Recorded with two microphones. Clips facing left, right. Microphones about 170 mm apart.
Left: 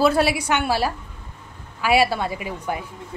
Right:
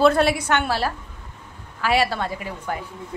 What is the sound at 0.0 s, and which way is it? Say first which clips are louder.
A woman's voice: right 1 dB; 5° left (ahead or behind).